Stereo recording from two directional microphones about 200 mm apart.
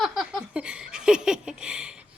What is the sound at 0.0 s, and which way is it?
Laughter, centre (ahead or behind).